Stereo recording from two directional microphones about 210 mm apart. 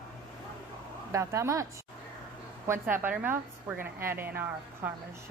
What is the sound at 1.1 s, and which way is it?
Speech, 15° right (ahead or behind).